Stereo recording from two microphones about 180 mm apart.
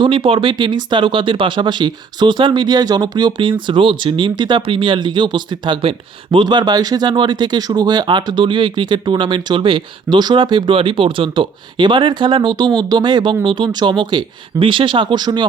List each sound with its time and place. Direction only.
0.0 s speech: 30° right (ahead or behind)